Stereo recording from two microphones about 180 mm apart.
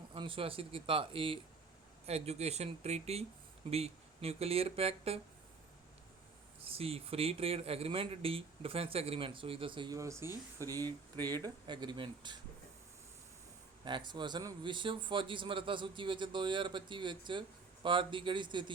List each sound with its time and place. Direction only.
0.1 s speech: 30° right (ahead or behind)
6.7 s speech: 30° right (ahead or behind)
13.8 s speech: 25° right (ahead or behind)